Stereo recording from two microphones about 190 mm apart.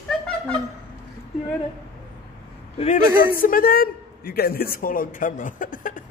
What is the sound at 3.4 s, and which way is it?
A man's voice, 50° left (ahead or behind).